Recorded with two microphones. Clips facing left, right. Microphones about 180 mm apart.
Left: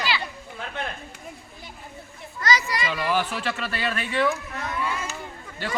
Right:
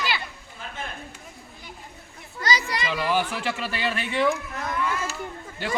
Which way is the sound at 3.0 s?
15° right (ahead or behind).